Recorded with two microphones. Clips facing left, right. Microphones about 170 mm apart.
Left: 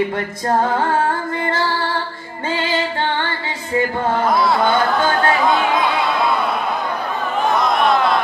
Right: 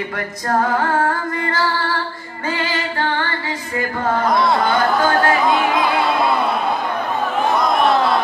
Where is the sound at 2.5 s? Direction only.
25° left (ahead or behind).